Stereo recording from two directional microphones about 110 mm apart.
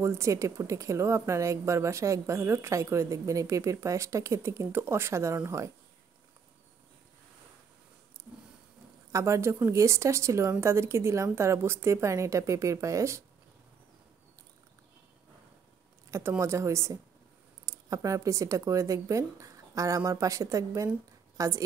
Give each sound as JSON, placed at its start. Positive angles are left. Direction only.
{"t": 0.0, "sound": "speech", "side_deg": -25}
{"t": 9.1, "sound": "speech", "side_deg": -25}
{"t": 16.1, "sound": "speech", "side_deg": -25}